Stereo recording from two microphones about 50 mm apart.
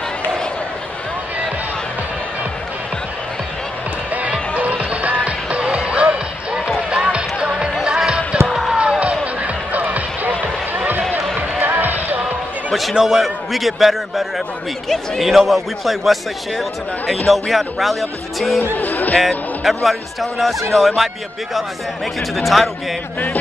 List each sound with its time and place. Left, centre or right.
4.6 s music: right
8.5 s music: centre
9.2 s music: right
11.6 s music: right
12.7 s speech: centre
18.6 s music: left
19.1 s speech: centre
22.3 s speech: centre